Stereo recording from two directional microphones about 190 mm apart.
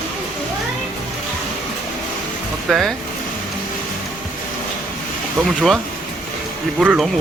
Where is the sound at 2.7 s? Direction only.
Centre (ahead or behind).